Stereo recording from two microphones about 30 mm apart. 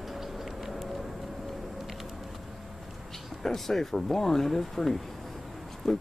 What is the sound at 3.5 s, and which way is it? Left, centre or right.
Speech, centre.